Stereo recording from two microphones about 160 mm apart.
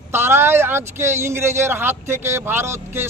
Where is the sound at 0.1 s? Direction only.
15° right (ahead or behind).